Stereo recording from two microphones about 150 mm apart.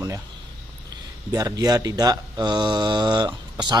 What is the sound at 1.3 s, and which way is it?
Speech, 25° right (ahead or behind).